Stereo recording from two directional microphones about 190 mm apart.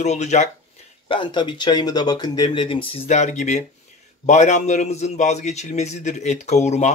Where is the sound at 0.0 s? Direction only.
35° left (ahead or behind).